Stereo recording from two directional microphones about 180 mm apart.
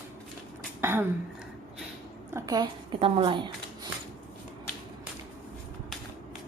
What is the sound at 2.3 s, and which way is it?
Speech, 20° right (ahead or behind).